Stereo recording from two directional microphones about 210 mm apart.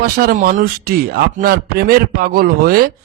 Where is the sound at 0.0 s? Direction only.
45° right (ahead or behind).